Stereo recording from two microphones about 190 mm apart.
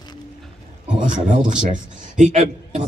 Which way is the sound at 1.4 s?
40° right (ahead or behind).